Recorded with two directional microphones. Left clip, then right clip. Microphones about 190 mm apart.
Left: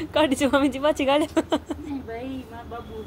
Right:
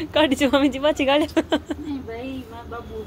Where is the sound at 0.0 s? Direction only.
5° right (ahead or behind).